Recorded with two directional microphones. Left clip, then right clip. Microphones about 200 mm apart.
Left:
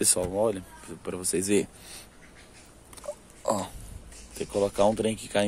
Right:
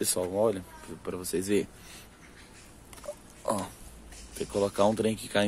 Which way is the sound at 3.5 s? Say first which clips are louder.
Left 3 dB; 5° left (ahead or behind).